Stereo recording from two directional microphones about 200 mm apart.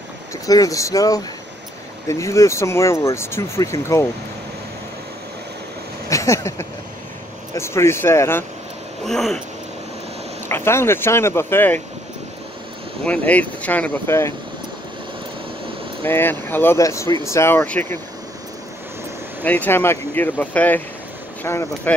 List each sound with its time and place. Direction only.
0.5 s speech: 15° left (ahead or behind)
6.0 s a sound: 15° left (ahead or behind)
7.5 s speech: 15° left (ahead or behind)
9.0 s a sound: centre (ahead or behind)
10.5 s speech: 10° left (ahead or behind)
13.0 s speech: 5° left (ahead or behind)
16.0 s speech: 10° left (ahead or behind)
19.4 s speech: 10° left (ahead or behind)